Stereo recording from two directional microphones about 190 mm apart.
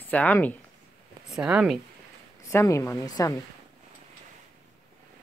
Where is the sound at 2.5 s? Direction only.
15° left (ahead or behind).